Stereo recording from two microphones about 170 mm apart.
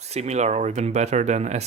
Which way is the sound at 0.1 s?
40° right (ahead or behind).